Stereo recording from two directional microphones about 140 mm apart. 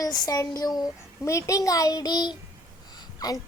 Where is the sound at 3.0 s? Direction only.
25° left (ahead or behind).